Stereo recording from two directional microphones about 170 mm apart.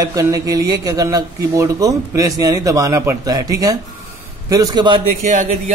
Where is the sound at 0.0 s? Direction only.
20° right (ahead or behind).